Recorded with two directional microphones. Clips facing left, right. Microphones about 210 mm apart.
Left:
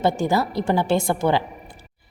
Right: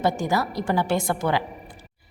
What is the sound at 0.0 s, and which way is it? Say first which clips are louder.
A woman's voice: left 3 dB; 25° left (ahead or behind).